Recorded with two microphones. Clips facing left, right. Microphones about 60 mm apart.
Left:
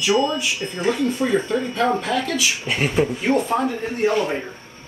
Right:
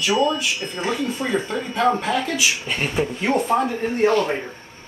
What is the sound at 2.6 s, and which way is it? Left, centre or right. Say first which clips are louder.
Speech: left 3 dB; centre.